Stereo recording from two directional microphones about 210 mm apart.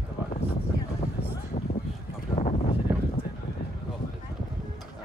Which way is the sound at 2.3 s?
30° left (ahead or behind).